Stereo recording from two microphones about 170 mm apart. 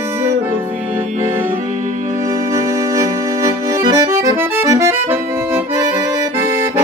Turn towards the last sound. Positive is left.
turn(degrees=-15)  # may be behind; listen again after turning